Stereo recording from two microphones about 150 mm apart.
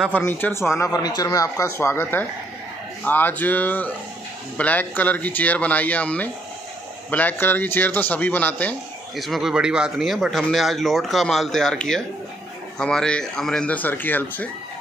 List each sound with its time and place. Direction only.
0.1 s speech: 10° left (ahead or behind)
9.1 s speech: centre (ahead or behind)